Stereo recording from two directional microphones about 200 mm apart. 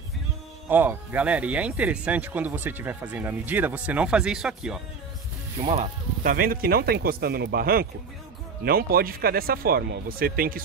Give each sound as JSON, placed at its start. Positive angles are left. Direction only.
{"t": 0.7, "sound": "speech", "side_deg": -10}
{"t": 5.6, "sound": "speech", "side_deg": -30}
{"t": 6.2, "sound": "speech", "side_deg": -45}